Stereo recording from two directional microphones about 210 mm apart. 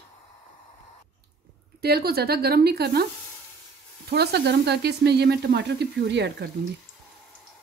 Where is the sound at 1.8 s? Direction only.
50° right (ahead or behind).